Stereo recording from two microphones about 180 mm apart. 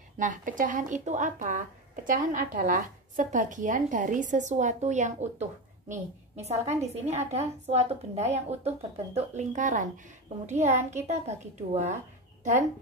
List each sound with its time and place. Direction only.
0.2 s speech: 45° right (ahead or behind)